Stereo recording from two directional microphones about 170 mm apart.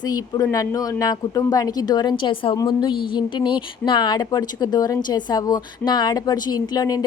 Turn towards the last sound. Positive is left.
turn(degrees=20)  # may be behind; listen again after turning